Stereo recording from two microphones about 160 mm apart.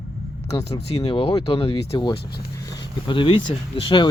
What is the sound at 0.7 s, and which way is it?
Speech, 40° left (ahead or behind).